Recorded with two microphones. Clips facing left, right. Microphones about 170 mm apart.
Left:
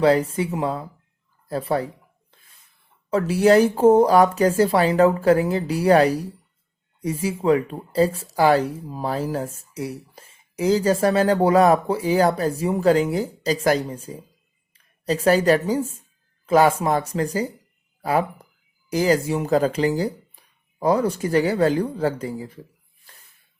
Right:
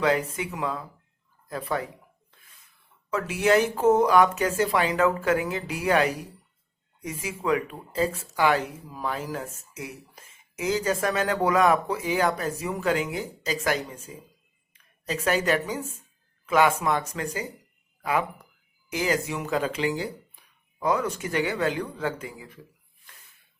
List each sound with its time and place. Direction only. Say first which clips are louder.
0.0 s speech: left 7 dB; 30° left (ahead or behind)
3.1 s speech: left 6 dB; 35° left (ahead or behind)